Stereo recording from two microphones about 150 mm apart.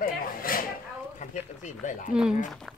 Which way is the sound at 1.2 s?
55° left (ahead or behind).